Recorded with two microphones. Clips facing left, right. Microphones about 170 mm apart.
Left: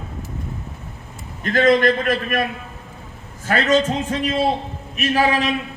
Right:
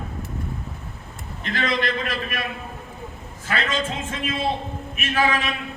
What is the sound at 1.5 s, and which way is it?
A man's voice, 45° left (ahead or behind).